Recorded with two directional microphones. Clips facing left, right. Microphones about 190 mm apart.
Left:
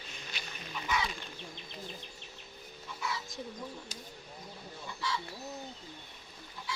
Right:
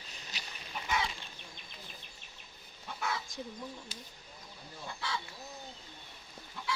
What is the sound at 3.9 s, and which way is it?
Bird, 45° left (ahead or behind).